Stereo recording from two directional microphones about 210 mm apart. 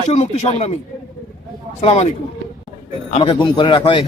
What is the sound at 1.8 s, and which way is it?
Speech, 30° left (ahead or behind).